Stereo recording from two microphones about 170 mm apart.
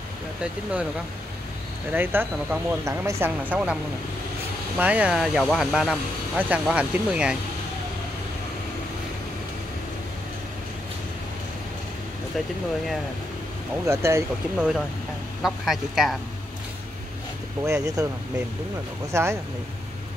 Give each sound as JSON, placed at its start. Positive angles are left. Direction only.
{"t": 1.9, "sound": "speech", "side_deg": -10}
{"t": 4.7, "sound": "speech", "side_deg": -10}
{"t": 13.8, "sound": "speech", "side_deg": -15}
{"t": 15.4, "sound": "speech", "side_deg": 0}
{"t": 17.6, "sound": "speech", "side_deg": -20}
{"t": 19.1, "sound": "speech", "side_deg": -15}